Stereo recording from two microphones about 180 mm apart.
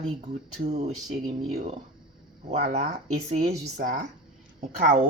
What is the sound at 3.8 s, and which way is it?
Speech, 60° right (ahead or behind).